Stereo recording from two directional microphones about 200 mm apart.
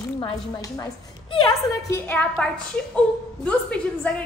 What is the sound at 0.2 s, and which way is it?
Speech, 20° left (ahead or behind).